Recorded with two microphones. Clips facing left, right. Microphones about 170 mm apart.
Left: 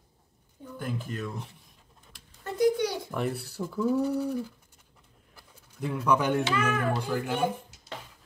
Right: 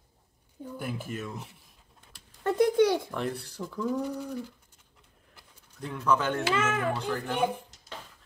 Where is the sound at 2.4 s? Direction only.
60° right (ahead or behind).